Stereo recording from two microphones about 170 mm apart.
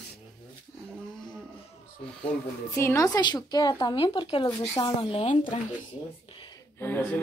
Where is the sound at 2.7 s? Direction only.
15° left (ahead or behind); by 5.6 s 40° left (ahead or behind).